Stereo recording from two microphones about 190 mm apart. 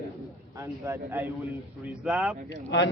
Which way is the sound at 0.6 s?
15° right (ahead or behind).